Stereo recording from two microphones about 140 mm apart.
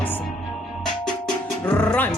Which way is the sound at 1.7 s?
10° left (ahead or behind).